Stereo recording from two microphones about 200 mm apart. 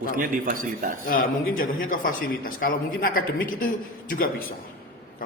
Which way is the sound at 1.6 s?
45° left (ahead or behind).